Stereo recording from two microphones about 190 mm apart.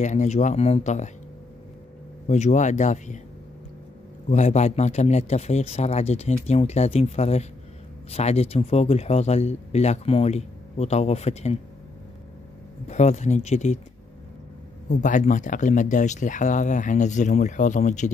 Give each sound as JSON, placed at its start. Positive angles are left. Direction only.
{"t": 0.0, "sound": "speech", "side_deg": 40}
{"t": 2.2, "sound": "speech", "side_deg": 40}
{"t": 4.3, "sound": "speech", "side_deg": 35}
{"t": 12.8, "sound": "speech", "side_deg": 35}
{"t": 14.9, "sound": "speech", "side_deg": 40}